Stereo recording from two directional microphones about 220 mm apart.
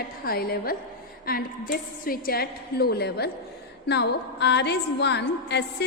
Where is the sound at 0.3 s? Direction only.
45° left (ahead or behind).